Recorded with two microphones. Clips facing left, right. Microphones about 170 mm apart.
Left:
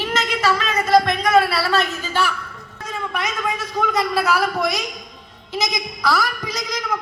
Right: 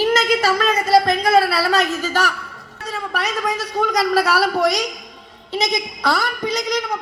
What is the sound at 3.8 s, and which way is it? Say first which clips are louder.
Speech: right 2 dB; 40° right (ahead or behind).